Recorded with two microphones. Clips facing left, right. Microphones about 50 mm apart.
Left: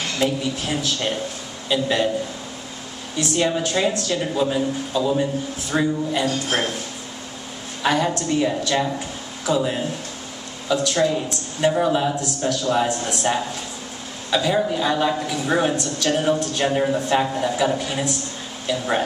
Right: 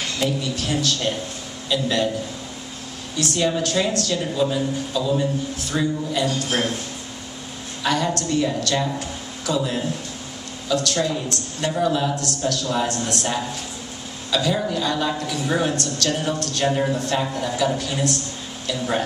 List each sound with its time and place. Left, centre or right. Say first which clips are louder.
0.2 s a woman's voice: left 2 dB; centre
3.3 s a woman's voice: even; centre
7.8 s a woman's voice: left 2 dB; centre